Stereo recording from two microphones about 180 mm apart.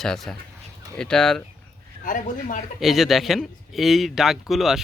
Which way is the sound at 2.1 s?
50° left (ahead or behind).